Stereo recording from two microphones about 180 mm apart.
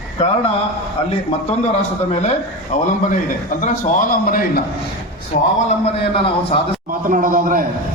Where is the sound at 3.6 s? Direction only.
45° left (ahead or behind).